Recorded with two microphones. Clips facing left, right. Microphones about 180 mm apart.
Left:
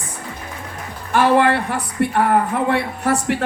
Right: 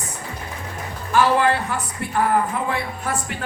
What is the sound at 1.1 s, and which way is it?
Speech, 60° left (ahead or behind).